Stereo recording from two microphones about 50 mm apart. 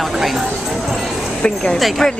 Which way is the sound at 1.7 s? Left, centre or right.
Centre.